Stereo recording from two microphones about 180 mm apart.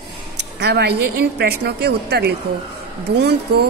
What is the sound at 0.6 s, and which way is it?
A woman's voice, 65° right (ahead or behind).